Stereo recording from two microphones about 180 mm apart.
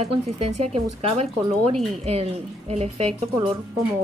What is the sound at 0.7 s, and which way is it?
A woman's voice, 35° right (ahead or behind).